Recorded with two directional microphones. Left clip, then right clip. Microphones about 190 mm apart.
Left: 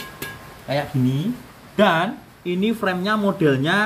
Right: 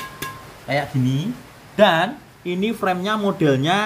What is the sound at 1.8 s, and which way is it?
Speech, 15° right (ahead or behind).